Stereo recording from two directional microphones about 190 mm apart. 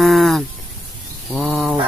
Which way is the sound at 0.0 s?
Centre (ahead or behind).